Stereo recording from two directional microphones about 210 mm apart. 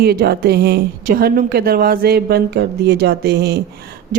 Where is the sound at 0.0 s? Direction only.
50° right (ahead or behind).